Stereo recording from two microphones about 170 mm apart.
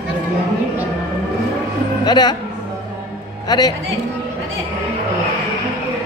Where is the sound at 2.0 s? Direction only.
25° left (ahead or behind).